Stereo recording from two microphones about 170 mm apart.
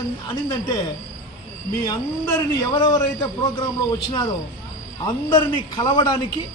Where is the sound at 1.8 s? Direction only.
20° left (ahead or behind).